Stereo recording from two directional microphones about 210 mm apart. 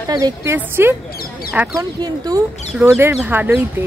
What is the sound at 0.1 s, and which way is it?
Speech, 15° right (ahead or behind).